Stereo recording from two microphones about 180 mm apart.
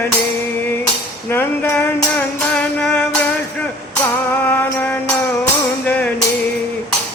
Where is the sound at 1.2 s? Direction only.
10° left (ahead or behind).